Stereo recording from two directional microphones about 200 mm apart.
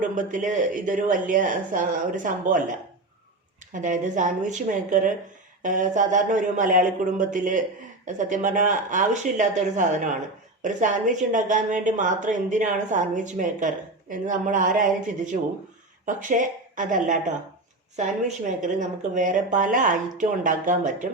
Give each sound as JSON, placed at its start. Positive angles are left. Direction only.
{"t": 0.0, "sound": "a woman's voice", "side_deg": -40}